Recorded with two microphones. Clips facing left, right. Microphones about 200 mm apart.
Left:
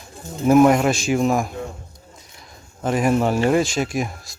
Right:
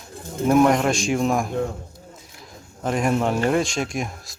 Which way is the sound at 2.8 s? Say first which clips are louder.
Left 3 dB; 5° left (ahead or behind).